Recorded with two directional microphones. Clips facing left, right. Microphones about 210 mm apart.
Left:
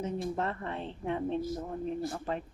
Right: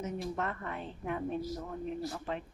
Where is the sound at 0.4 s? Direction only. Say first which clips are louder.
Left 3 dB; 30° left (ahead or behind).